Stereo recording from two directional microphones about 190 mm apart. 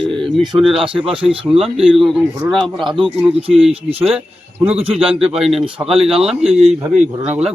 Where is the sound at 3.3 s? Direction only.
30° right (ahead or behind).